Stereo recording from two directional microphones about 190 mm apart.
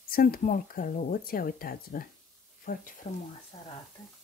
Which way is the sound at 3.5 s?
25° left (ahead or behind).